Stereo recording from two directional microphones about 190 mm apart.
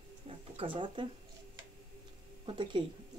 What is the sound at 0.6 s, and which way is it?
Speech, 25° right (ahead or behind).